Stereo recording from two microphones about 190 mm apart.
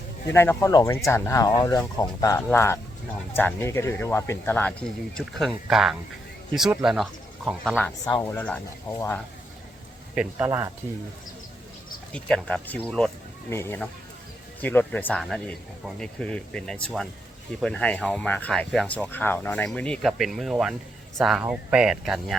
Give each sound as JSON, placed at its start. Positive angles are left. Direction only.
{"t": 0.3, "sound": "speech", "side_deg": 15}
{"t": 8.0, "sound": "speech", "side_deg": 15}
{"t": 10.2, "sound": "speech", "side_deg": -10}
{"t": 12.1, "sound": "speech", "side_deg": 5}